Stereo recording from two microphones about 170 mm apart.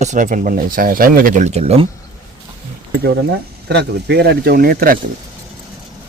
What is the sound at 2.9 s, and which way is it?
Speech, 85° right.